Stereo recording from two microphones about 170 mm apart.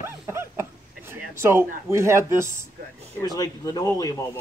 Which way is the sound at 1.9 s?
15° right (ahead or behind).